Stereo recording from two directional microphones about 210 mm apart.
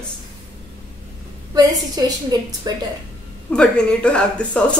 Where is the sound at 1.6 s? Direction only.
20° right (ahead or behind).